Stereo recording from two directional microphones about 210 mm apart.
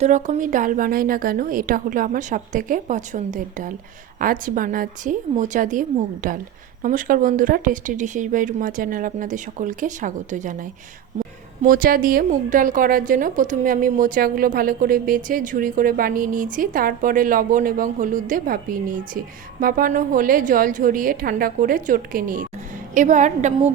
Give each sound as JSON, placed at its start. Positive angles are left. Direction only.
{"t": 0.0, "sound": "a woman's voice", "side_deg": -35}